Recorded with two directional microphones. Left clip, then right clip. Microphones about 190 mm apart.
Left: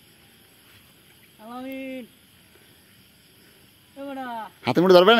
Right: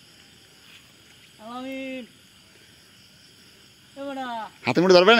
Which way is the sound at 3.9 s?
Centre (ahead or behind).